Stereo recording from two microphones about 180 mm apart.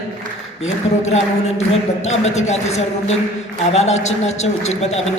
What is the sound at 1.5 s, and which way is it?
A man's voice, 40° left (ahead or behind).